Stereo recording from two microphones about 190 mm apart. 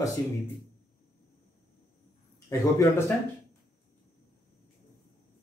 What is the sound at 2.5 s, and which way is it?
Speech, 15° left (ahead or behind).